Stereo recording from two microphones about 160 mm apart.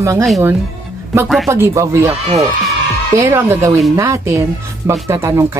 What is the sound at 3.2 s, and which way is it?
Speech, 15° right (ahead or behind).